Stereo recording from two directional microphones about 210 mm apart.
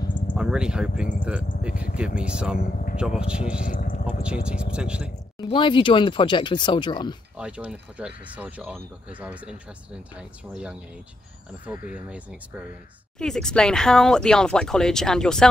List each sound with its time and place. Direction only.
0.3 s speech: 5° right (ahead or behind)
2.6 s a sound: 40° left (ahead or behind)
3.0 s speech: 5° right (ahead or behind)
3.6 s speech: 40° left (ahead or behind)
4.2 s speech: 5° right (ahead or behind)
5.4 s speech: 25° left (ahead or behind)
7.3 s speech: 5° right (ahead or behind)
11.9 s speech: 5° right (ahead or behind)